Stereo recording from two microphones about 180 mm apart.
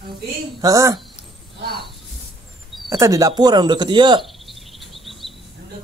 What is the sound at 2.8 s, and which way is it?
Speech, 20° right (ahead or behind).